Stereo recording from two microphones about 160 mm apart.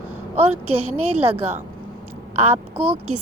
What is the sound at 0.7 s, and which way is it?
Speech, 40° right (ahead or behind).